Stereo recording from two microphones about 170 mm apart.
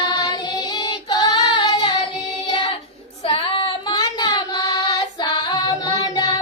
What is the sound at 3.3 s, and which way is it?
Child singing, 30° left (ahead or behind).